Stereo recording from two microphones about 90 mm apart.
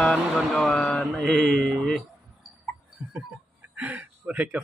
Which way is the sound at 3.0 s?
20° right (ahead or behind).